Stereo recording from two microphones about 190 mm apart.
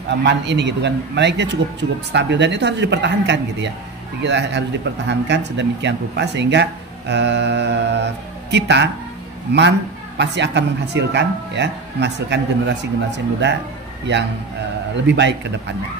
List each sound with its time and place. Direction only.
0.2 s speech: 65° right (ahead or behind)
15.0 s a man's voice: 65° right (ahead or behind)